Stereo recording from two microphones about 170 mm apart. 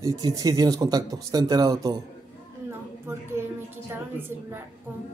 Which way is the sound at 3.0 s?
15° right (ahead or behind).